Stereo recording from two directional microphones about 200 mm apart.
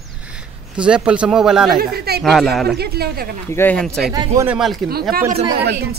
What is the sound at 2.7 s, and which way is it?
Speech, 55° right (ahead or behind).